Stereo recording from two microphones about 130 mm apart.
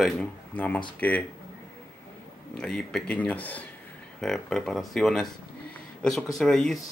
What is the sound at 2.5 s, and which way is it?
Speech, 5° left (ahead or behind).